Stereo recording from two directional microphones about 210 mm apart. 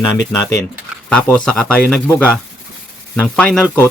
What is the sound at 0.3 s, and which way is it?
A man's voice, 5° left (ahead or behind).